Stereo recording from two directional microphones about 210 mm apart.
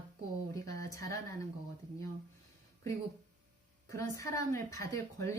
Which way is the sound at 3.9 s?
15° left (ahead or behind).